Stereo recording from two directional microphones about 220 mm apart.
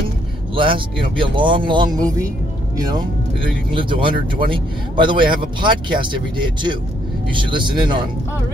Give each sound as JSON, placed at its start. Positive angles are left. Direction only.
{"t": 0.6, "sound": "speech", "side_deg": -20}